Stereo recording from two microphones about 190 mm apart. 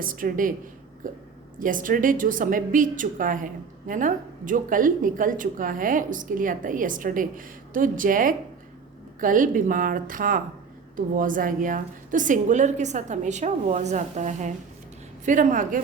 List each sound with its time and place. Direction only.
0.0 s a woman's voice: 45° right (ahead or behind)